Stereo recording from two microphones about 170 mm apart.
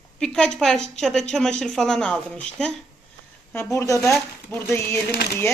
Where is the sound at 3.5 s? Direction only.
15° left (ahead or behind).